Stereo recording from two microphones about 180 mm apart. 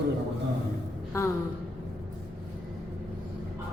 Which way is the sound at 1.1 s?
15° left (ahead or behind).